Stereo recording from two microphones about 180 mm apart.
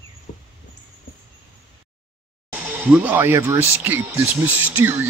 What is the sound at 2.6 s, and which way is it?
Speech, 10° right (ahead or behind).